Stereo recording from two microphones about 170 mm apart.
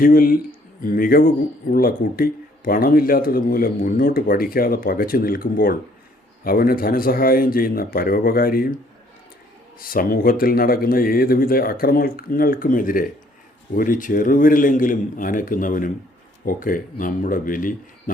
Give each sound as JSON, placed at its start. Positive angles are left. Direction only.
{"t": 0.0, "sound": "speech", "side_deg": 55}
{"t": 9.8, "sound": "a man's voice", "side_deg": 60}